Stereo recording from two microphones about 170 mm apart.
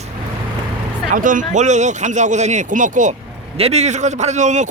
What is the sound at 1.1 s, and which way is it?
A man's voice, 50° right (ahead or behind).